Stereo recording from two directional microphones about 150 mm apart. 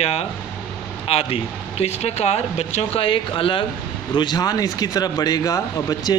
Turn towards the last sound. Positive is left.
turn(degrees=25)  # may be behind; listen again after turning